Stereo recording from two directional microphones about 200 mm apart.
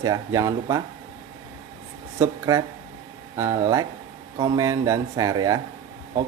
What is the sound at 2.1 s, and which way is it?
Speech, 15° right (ahead or behind).